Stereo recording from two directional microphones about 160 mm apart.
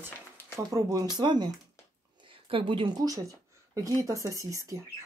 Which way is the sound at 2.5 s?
30° right (ahead or behind).